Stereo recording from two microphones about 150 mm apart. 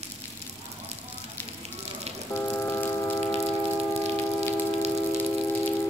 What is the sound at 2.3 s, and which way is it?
Music, 15° left (ahead or behind).